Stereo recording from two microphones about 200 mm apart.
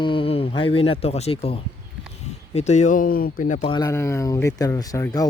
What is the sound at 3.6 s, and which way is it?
Speech, 20° left (ahead or behind).